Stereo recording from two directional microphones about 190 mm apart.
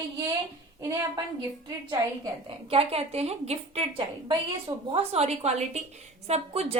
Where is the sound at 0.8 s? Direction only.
15° right (ahead or behind).